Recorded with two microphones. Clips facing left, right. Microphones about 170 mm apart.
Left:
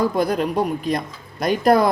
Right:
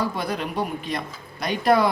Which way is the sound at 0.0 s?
45° left (ahead or behind).